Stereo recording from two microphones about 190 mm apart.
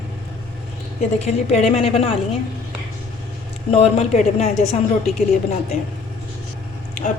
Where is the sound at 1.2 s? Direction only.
35° left (ahead or behind).